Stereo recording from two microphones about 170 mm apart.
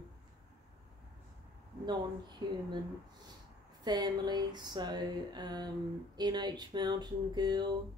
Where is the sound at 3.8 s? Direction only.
25° right (ahead or behind).